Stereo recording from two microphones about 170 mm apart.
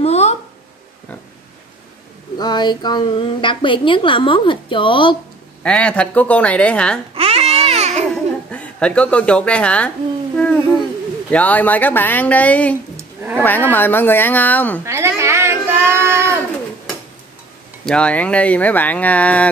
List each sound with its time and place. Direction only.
0.0 s a sound: 40° left (ahead or behind)
2.3 s a woman's voice: 25° left (ahead or behind)
5.6 s speech: 5° left (ahead or behind)
7.2 s baby cry: 35° right (ahead or behind)
8.1 s speech: 5° left (ahead or behind)
12.9 s a sound: 10° right (ahead or behind)
13.4 s speech: 10° left (ahead or behind)
14.9 s a sound: 15° right (ahead or behind)
17.8 s speech: 5° left (ahead or behind)